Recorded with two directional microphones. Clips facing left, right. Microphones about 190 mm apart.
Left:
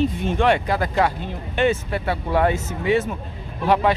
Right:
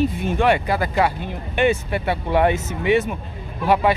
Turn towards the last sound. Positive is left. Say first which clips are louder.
# right 1 dB
turn(degrees=-5)  # may be behind; listen again after turning